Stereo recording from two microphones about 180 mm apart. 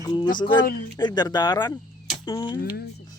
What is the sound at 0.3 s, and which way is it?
Speech, 25° left (ahead or behind).